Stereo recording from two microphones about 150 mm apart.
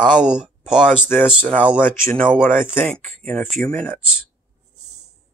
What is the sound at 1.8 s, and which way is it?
Speech, 15° left (ahead or behind).